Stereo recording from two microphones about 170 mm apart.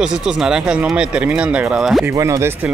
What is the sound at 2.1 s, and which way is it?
Speech, 15° right (ahead or behind).